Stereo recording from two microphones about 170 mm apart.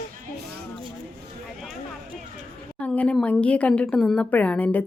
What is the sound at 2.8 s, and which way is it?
A woman's voice, 10° left (ahead or behind).